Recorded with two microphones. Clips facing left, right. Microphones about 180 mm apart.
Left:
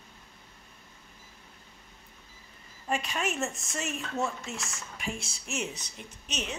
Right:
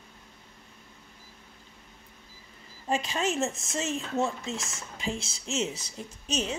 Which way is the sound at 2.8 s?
30° right (ahead or behind).